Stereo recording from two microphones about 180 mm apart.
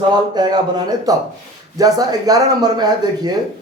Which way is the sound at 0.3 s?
25° right (ahead or behind).